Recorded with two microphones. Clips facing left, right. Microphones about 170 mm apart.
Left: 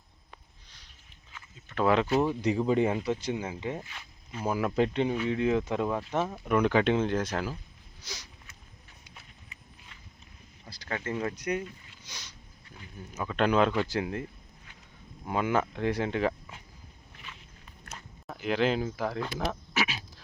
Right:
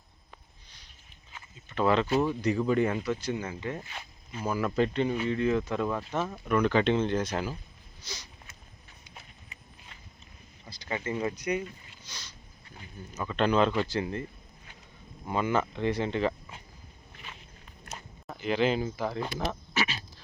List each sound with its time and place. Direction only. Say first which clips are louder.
1.7 s speech: even; 5° left (ahead or behind)
2.1 s speech: even; 20° left (ahead or behind); by 7.3 s 5° left (ahead or behind)
10.8 s speech: right 1 dB; 5° right (ahead or behind)
13.1 s speech: even; 5° left (ahead or behind)
18.3 s speech: even; centre (ahead or behind)
19.4 s duck: left 1 dB; 5° left (ahead or behind)